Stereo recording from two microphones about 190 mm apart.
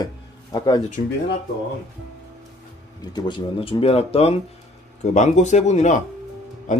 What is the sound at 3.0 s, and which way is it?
Speech, 25° left (ahead or behind).